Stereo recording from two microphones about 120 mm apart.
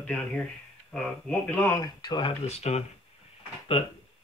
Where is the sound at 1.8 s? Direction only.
35° left (ahead or behind).